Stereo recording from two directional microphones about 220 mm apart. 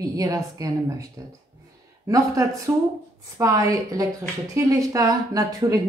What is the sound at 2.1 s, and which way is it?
A woman's voice, 15° right (ahead or behind).